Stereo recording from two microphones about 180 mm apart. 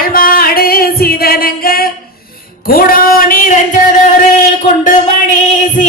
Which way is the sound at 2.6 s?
55° left (ahead or behind).